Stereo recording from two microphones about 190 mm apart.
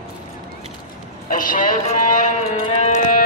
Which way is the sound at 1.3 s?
45° left (ahead or behind).